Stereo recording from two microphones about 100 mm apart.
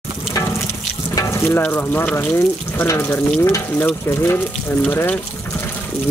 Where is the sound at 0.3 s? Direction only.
30° left (ahead or behind).